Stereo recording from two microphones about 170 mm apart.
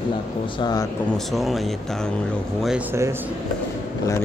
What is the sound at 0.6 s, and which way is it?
Speech, 25° left (ahead or behind).